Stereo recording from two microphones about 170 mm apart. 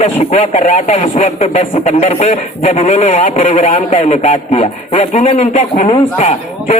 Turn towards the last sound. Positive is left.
turn(degrees=40)  # may be behind; listen again after turning